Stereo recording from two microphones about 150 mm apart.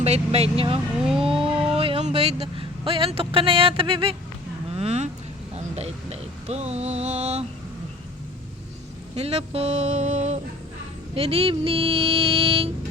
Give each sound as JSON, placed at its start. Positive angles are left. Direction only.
{"t": 0.0, "sound": "speech", "side_deg": -45}
{"t": 0.9, "sound": "speech", "side_deg": -5}
{"t": 1.2, "sound": "a sound", "side_deg": -35}
{"t": 1.7, "sound": "music", "side_deg": -40}
{"t": 2.0, "sound": "speech", "side_deg": -45}
{"t": 4.7, "sound": "vehicle", "side_deg": -45}
{"t": 5.5, "sound": "music", "side_deg": -45}
{"t": 9.1, "sound": "a sound", "side_deg": -45}
{"t": 11.1, "sound": "speech", "side_deg": -40}